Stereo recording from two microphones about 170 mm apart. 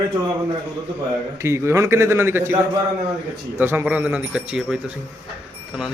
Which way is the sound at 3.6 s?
15° right (ahead or behind).